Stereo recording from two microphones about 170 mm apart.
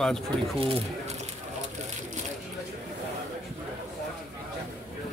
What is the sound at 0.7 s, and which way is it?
Speech, 35° right (ahead or behind).